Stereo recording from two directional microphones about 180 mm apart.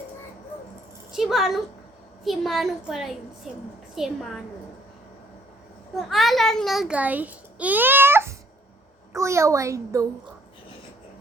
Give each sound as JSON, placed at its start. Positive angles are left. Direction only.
{"t": 1.1, "sound": "a child's voice", "side_deg": 0}
{"t": 6.0, "sound": "a child's voice", "side_deg": 0}